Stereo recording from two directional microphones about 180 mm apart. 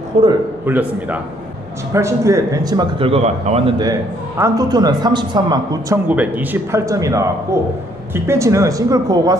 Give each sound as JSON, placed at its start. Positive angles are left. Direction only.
{"t": 0.2, "sound": "a man's voice", "side_deg": -35}
{"t": 0.7, "sound": "speech", "side_deg": -10}
{"t": 6.0, "sound": "speech", "side_deg": -10}